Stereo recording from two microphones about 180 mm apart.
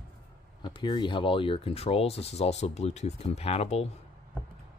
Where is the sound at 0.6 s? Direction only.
25° left (ahead or behind).